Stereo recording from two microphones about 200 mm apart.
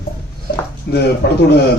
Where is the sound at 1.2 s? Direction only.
55° left (ahead or behind).